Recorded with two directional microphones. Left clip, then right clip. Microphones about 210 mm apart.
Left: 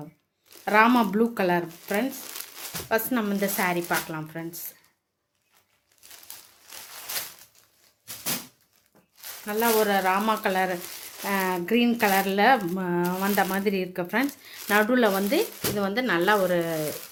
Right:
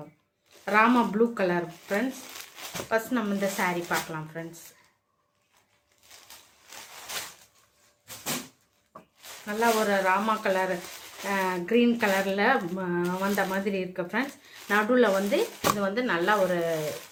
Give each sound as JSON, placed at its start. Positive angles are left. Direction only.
{"t": 0.6, "sound": "speech", "side_deg": 50}
{"t": 9.5, "sound": "speech", "side_deg": 50}